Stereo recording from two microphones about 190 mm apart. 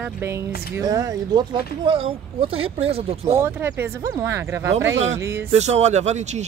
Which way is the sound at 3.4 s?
10° right (ahead or behind).